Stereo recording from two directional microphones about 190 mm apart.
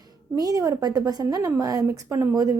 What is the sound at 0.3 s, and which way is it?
A woman's voice, 20° right (ahead or behind).